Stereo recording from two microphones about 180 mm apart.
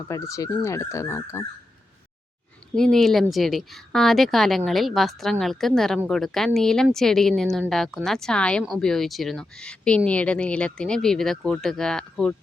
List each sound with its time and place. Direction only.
0.1 s speech: 15° left (ahead or behind)
2.7 s speech: 5° left (ahead or behind)